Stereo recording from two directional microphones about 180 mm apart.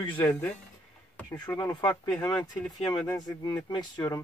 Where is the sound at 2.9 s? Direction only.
20° left (ahead or behind).